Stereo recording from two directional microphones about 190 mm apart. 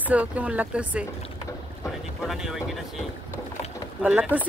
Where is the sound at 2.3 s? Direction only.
Centre (ahead or behind).